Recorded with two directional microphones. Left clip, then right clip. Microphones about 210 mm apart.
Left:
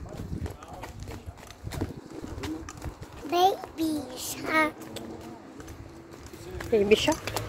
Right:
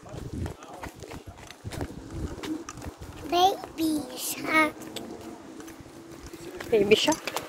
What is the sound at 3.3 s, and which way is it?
A child's voice, 40° left (ahead or behind).